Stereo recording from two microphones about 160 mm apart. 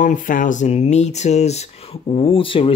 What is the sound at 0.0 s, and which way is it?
Speech, 55° left (ahead or behind).